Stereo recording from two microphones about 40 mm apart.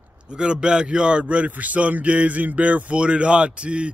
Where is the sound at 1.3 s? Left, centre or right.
Right.